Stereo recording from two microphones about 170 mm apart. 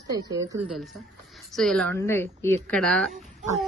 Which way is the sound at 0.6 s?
Centre (ahead or behind).